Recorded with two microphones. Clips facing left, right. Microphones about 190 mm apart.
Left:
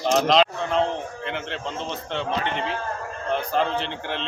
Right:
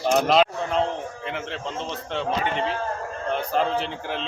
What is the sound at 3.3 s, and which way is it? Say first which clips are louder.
Speech: even; centre (ahead or behind).